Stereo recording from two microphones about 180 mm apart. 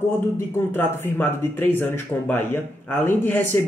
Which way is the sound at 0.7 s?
10° left (ahead or behind).